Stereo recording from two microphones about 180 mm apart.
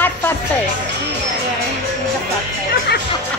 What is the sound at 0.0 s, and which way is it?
Music, 10° left (ahead or behind).